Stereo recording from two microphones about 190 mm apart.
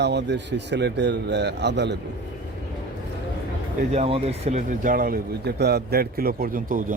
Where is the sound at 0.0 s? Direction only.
65° right (ahead or behind).